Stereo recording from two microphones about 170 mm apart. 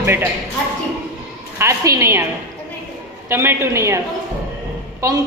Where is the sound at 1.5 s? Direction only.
15° right (ahead or behind).